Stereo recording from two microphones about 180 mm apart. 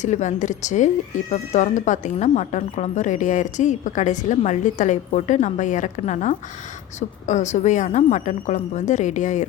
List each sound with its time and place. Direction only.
0.0 s a woman's voice: 40° left (ahead or behind)